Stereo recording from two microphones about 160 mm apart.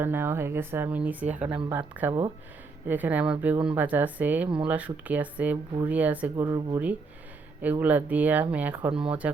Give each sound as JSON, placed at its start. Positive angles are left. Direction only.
{"t": 0.0, "sound": "speech", "side_deg": -15}
{"t": 6.3, "sound": "speech", "side_deg": -25}
{"t": 7.6, "sound": "speech", "side_deg": -10}